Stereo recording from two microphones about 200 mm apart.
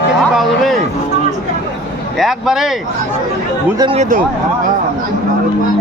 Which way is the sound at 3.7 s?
25° right (ahead or behind).